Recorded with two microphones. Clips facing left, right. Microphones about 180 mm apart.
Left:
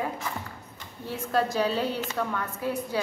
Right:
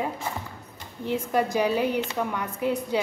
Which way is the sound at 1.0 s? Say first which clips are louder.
Right 2 dB; 15° right (ahead or behind).